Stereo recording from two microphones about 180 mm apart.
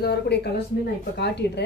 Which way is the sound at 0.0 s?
65° left (ahead or behind).